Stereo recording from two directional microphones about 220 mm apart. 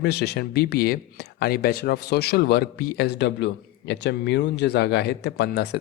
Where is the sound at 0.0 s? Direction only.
50° left (ahead or behind).